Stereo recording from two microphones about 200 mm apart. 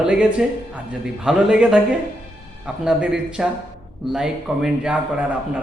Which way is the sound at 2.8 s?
5° right (ahead or behind).